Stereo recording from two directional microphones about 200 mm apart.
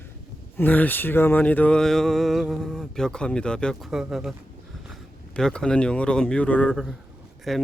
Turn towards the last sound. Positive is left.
turn(degrees=0)  # may be behind; listen again after turning